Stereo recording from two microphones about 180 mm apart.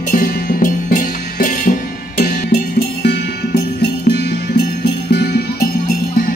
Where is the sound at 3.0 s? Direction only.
65° left (ahead or behind).